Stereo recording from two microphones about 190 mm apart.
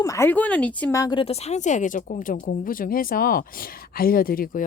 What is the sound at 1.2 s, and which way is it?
Speech, 35° left (ahead or behind).